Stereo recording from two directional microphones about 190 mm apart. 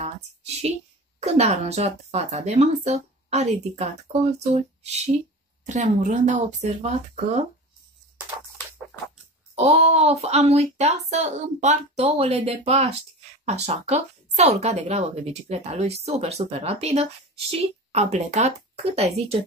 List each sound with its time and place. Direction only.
1.2 s speech: 35° right (ahead or behind)
9.6 s speech: 35° right (ahead or behind)